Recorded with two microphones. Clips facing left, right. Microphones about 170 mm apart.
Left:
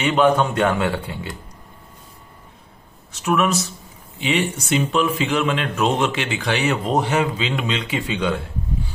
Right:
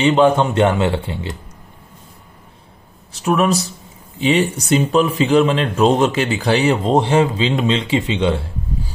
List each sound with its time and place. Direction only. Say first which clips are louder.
0.0 s speech: right 4 dB; 25° right (ahead or behind)
3.1 s speech: right 3 dB; 35° right (ahead or behind)